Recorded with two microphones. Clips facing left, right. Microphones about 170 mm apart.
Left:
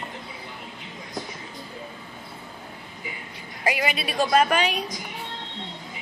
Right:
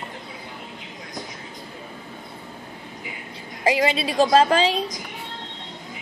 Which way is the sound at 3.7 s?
25° right (ahead or behind).